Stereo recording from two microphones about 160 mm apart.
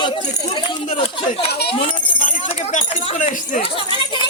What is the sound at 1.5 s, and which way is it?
Speech, 90° left.